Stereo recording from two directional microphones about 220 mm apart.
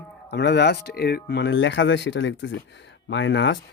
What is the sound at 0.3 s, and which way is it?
Speech, 50° left (ahead or behind).